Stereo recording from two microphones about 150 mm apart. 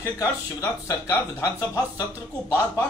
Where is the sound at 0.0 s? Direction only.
20° left (ahead or behind).